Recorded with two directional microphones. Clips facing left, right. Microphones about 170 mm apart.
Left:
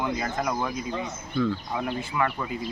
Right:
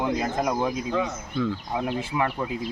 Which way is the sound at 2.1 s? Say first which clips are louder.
Even; 25° right (ahead or behind).